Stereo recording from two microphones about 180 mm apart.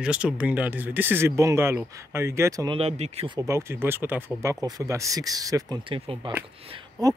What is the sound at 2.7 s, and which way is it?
Speech, 35° right (ahead or behind).